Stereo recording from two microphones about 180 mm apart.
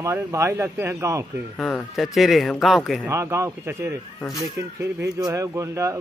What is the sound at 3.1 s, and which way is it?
Speech, 15° right (ahead or behind).